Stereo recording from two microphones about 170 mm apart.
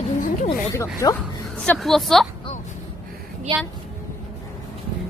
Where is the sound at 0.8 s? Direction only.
15° left (ahead or behind).